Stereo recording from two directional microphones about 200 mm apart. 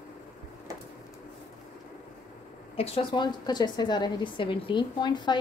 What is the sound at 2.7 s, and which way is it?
A woman's voice, 30° left (ahead or behind).